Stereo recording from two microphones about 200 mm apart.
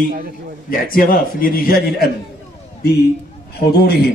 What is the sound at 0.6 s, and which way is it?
A man's voice, 45° left (ahead or behind).